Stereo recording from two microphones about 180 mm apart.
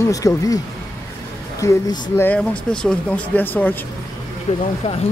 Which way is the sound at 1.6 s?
20° left (ahead or behind).